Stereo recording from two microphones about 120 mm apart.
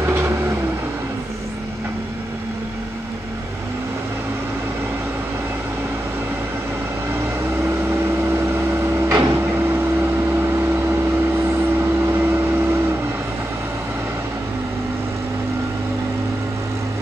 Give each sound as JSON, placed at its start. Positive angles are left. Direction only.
{"t": 0.0, "sound": "vehicle", "side_deg": -20}
{"t": 7.6, "sound": "vehicle", "side_deg": -20}
{"t": 12.1, "sound": "vehicle", "side_deg": -20}